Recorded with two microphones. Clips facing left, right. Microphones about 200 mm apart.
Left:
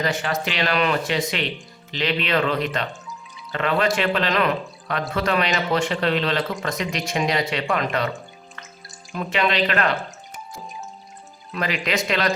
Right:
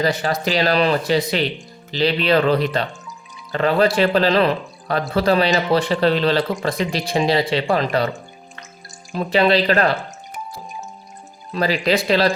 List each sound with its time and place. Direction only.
0.0 s speech: 35° right (ahead or behind)
9.1 s speech: 35° right (ahead or behind)
11.5 s speech: 35° right (ahead or behind)